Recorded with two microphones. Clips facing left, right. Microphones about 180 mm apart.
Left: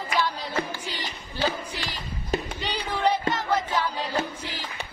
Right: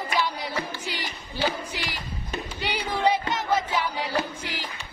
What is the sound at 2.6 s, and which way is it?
Music, 15° right (ahead or behind).